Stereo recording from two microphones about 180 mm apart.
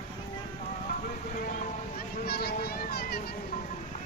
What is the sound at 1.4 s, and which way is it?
Boat, 50° left (ahead or behind).